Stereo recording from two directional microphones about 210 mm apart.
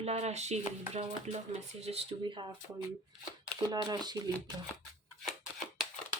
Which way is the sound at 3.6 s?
20° right (ahead or behind).